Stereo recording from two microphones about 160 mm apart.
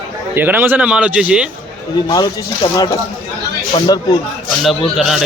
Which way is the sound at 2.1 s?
25° left (ahead or behind).